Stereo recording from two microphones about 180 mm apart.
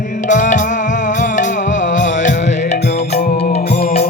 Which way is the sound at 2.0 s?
45° left (ahead or behind).